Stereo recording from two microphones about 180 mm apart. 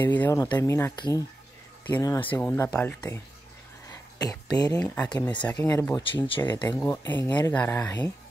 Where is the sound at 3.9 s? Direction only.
20° left (ahead or behind).